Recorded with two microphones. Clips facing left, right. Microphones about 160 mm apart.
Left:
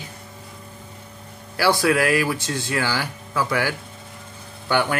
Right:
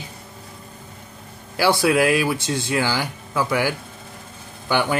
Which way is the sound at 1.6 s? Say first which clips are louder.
Right 1 dB; 20° right (ahead or behind).